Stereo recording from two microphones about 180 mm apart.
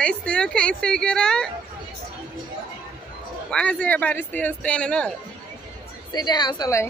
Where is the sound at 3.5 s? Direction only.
5° left (ahead or behind).